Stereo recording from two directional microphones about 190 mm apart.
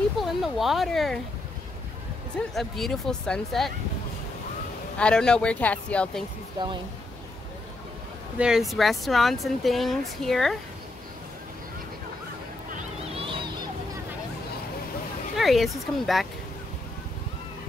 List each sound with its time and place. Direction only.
0.2 s speech: centre (ahead or behind)
2.3 s speech: centre (ahead or behind)
4.9 s speech: 5° left (ahead or behind)
8.4 s speech: 5° right (ahead or behind)
13.1 s a sound: 25° right (ahead or behind)
15.3 s speech: centre (ahead or behind)